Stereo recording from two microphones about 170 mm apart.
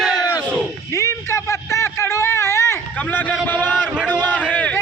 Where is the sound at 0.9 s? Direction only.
15° left (ahead or behind).